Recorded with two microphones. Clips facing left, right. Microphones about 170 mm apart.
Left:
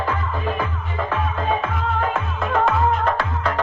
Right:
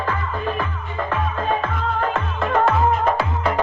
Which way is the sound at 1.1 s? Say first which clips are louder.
Even; 5° left (ahead or behind).